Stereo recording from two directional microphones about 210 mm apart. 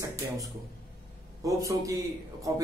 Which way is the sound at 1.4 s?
15° right (ahead or behind).